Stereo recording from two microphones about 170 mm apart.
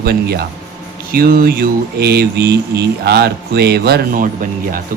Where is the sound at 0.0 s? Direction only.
70° right (ahead or behind).